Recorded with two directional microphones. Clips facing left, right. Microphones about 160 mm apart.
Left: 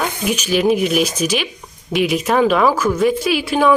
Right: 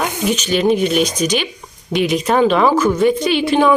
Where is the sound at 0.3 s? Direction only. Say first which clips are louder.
Right 1 dB; 5° left (ahead or behind).